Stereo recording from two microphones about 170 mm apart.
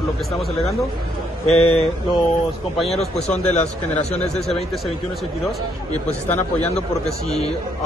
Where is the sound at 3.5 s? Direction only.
40° left (ahead or behind).